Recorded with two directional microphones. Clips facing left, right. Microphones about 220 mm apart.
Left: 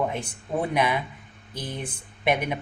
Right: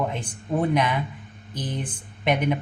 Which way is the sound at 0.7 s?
10° left (ahead or behind).